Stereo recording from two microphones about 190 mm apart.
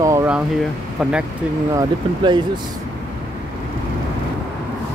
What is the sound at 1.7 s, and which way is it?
Speech, 25° right (ahead or behind).